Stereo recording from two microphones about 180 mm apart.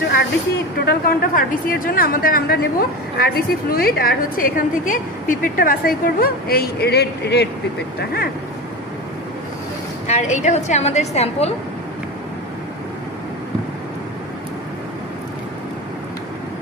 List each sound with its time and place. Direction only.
0.8 s a woman's voice: 55° left (ahead or behind)
10.0 s a woman's voice: 40° left (ahead or behind)